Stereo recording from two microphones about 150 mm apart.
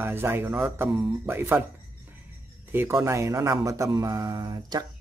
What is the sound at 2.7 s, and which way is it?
Speech, 15° right (ahead or behind).